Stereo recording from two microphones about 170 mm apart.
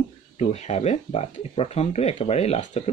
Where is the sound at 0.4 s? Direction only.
40° left (ahead or behind).